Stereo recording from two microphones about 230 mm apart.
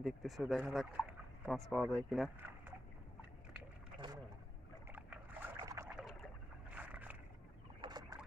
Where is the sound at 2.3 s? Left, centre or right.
Centre.